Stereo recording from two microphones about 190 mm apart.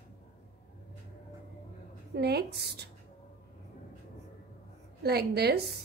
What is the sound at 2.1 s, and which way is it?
Speech, 60° right (ahead or behind).